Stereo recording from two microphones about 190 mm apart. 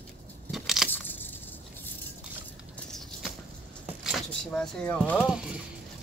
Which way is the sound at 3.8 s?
Centre (ahead or behind).